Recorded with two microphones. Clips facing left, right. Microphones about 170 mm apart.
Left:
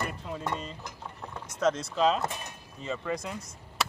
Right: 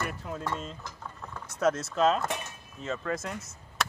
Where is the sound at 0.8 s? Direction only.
20° left (ahead or behind).